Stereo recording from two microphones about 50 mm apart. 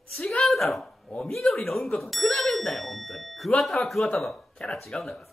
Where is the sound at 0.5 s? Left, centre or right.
Centre.